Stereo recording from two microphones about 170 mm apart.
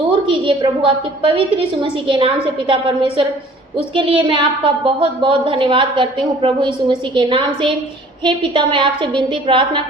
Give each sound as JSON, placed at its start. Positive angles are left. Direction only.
{"t": 0.1, "sound": "a woman's voice", "side_deg": -30}
{"t": 3.8, "sound": "a woman's voice", "side_deg": -30}